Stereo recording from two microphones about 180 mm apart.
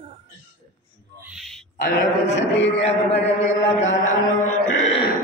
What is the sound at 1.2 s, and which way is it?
Owl, centre (ahead or behind).